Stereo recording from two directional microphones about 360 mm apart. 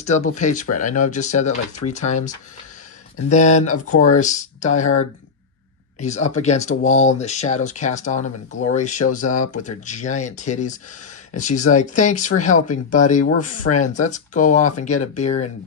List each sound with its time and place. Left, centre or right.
0.0 s speech: centre